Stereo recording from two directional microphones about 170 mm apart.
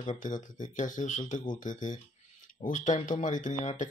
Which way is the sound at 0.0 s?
45° left (ahead or behind).